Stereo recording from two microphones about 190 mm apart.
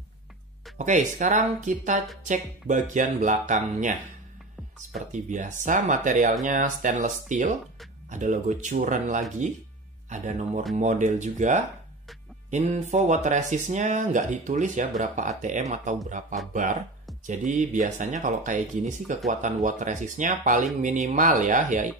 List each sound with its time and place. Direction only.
0.7 s speech: 40° right (ahead or behind)
4.9 s speech: 40° right (ahead or behind)